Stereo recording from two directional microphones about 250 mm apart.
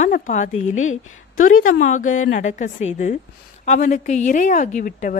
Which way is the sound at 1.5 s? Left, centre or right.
Left.